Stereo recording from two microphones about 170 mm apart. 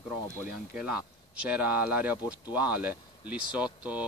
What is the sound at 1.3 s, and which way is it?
Speech, 5° right (ahead or behind).